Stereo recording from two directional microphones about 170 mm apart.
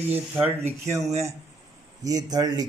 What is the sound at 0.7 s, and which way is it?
Speech, 15° right (ahead or behind).